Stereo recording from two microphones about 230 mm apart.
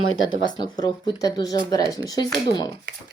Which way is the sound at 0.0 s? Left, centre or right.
Left.